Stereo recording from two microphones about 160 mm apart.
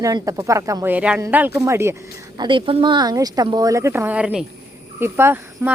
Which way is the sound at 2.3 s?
30° right (ahead or behind).